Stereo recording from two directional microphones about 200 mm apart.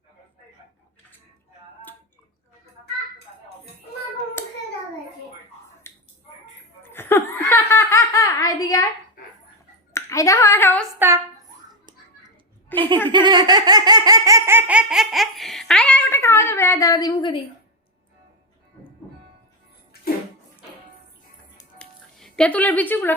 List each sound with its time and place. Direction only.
5.9 s a sound: 10° left (ahead or behind)
6.8 s laughter: 10° left (ahead or behind)
9.9 s speech: 15° left (ahead or behind)
12.6 s a sound: 10° left (ahead or behind)
13.1 s laughter: 25° right (ahead or behind); by 17.3 s 20° left (ahead or behind)
21.8 s music: 5° left (ahead or behind)